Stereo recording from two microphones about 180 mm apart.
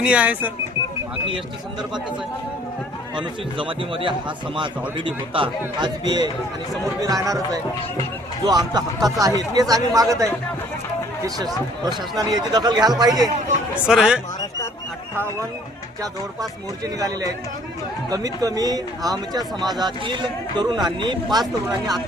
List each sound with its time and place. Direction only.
0.0 s speech: 5° right (ahead or behind)
3.2 s speech: 30° right (ahead or behind)
11.9 s speech: 20° right (ahead or behind)
13.8 s speech: 5° right (ahead or behind)
16.4 s speech: 20° right (ahead or behind)